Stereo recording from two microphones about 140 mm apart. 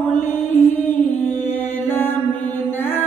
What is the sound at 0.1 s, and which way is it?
Mantra, 15° left (ahead or behind).